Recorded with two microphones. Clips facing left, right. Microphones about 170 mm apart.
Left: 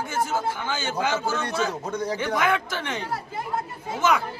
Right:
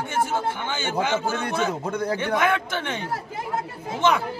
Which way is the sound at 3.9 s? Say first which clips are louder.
Right 1 dB; 30° right (ahead or behind).